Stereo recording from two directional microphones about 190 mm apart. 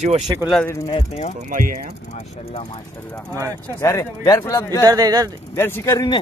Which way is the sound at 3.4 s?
15° right (ahead or behind).